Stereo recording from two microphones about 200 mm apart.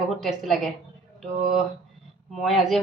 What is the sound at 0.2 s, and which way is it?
Speech, centre (ahead or behind).